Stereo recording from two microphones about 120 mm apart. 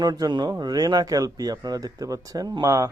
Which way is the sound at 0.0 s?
35° right (ahead or behind).